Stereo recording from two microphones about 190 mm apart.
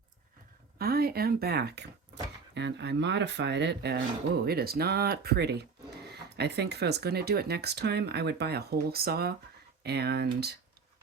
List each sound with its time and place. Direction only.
0.8 s speech: 55° right (ahead or behind)